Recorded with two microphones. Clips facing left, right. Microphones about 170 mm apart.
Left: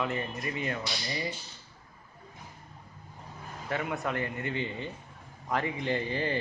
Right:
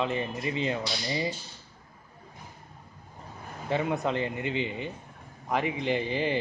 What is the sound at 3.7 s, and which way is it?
Speech, 25° right (ahead or behind).